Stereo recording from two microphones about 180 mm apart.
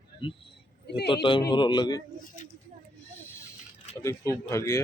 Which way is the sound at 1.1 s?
30° left (ahead or behind).